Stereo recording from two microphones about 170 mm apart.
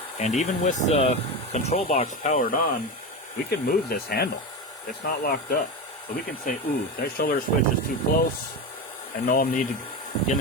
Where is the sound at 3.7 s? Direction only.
65° left (ahead or behind).